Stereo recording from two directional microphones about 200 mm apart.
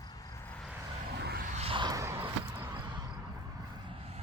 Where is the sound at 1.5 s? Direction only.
30° right (ahead or behind); by 2.8 s 10° right (ahead or behind).